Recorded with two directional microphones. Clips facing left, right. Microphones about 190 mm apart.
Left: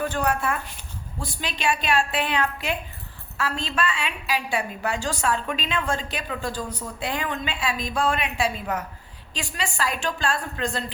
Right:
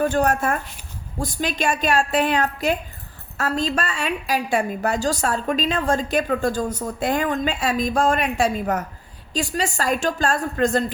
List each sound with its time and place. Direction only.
0.0 s a woman's voice: 45° right (ahead or behind)